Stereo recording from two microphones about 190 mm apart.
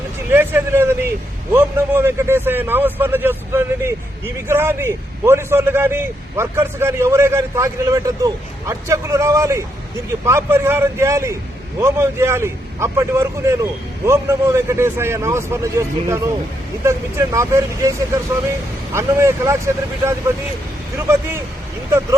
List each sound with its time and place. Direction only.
0.3 s a man's voice: 10° right (ahead or behind)